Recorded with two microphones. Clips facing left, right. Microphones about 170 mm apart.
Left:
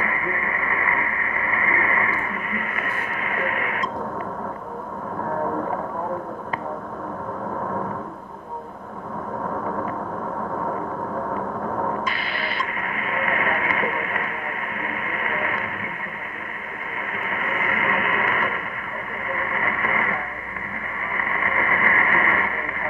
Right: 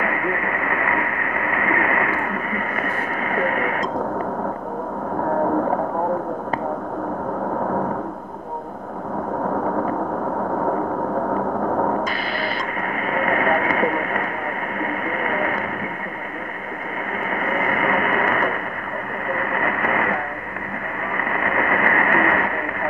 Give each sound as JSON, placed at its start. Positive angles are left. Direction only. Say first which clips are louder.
{"t": 1.6, "sound": "radio", "louder": "right 4 dB", "side_deg": -55}
{"t": 11.3, "sound": "a sound", "louder": "right 6 dB", "side_deg": -40}
{"t": 13.0, "sound": "vehicle", "louder": "right 5 dB", "side_deg": -40}
{"t": 14.8, "sound": "radio", "louder": "right 7 dB", "side_deg": -40}
{"t": 17.3, "sound": "radio", "louder": "right 5 dB", "side_deg": -40}
{"t": 21.2, "sound": "radio", "louder": "right 4 dB", "side_deg": -50}